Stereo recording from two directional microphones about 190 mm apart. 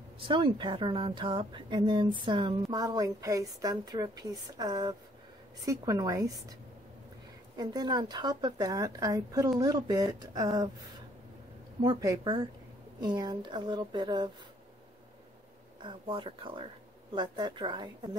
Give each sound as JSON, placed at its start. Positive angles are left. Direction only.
{"t": 0.2, "sound": "a woman's voice", "side_deg": -25}
{"t": 7.5, "sound": "speech", "side_deg": -20}
{"t": 11.8, "sound": "speech", "side_deg": -20}
{"t": 15.8, "sound": "speech", "side_deg": -25}